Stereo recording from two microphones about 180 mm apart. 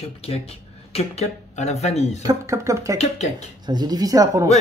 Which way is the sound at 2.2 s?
15° right (ahead or behind).